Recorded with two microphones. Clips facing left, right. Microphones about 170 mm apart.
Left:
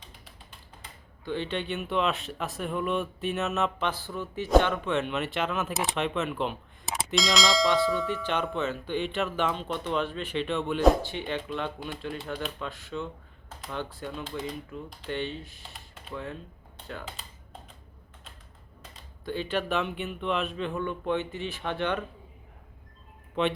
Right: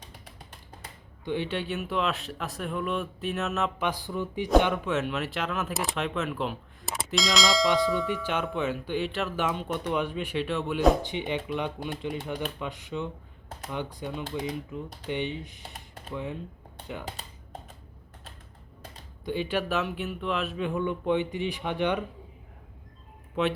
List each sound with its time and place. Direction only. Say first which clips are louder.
1.2 s speech: right 1 dB; 15° right (ahead or behind)
3.8 s speech: right 2 dB; 15° right (ahead or behind)
8.0 s speech: even; 10° right (ahead or behind)
11.0 s speech: right 2 dB; 15° right (ahead or behind)
19.2 s speech: right 1 dB; 15° right (ahead or behind)
23.4 s speech: even; 5° right (ahead or behind)